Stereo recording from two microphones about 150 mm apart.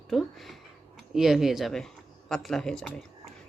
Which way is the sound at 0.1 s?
Centre (ahead or behind).